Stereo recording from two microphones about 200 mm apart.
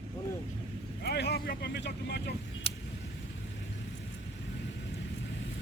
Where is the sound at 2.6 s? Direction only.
30° left (ahead or behind).